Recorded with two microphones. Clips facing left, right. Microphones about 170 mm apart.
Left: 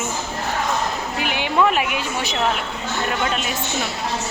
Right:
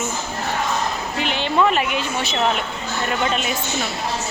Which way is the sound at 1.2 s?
10° left (ahead or behind).